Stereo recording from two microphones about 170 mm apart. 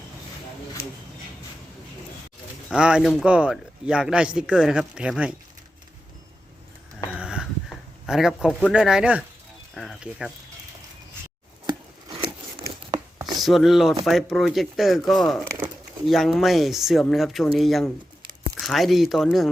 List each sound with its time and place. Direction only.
2.6 s speech: 5° right (ahead or behind)
7.1 s a sound: 5° right (ahead or behind)
9.7 s speech: centre (ahead or behind)
11.6 s a sound: 20° right (ahead or behind)
13.4 s speech: centre (ahead or behind)
15.4 s speech: 15° right (ahead or behind)
16.0 s speech: centre (ahead or behind)